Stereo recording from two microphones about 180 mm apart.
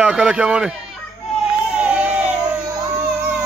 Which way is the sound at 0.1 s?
5° right (ahead or behind).